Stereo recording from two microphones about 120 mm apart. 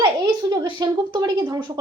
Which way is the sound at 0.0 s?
40° right (ahead or behind).